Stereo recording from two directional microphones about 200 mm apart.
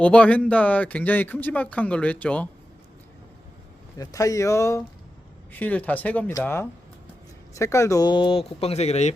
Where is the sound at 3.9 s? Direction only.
15° left (ahead or behind).